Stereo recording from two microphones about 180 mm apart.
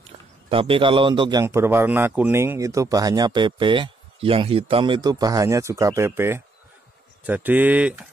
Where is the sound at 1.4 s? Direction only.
15° right (ahead or behind).